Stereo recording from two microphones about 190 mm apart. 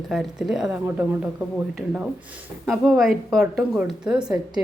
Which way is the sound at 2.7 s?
Centre (ahead or behind).